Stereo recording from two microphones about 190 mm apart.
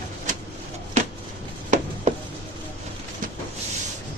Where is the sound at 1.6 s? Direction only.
40° right (ahead or behind).